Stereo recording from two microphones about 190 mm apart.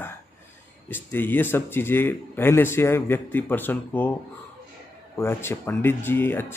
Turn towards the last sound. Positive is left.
turn(degrees=10)  # may be behind; listen again after turning